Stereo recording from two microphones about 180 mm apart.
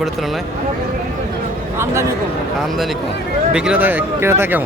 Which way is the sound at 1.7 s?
15° right (ahead or behind).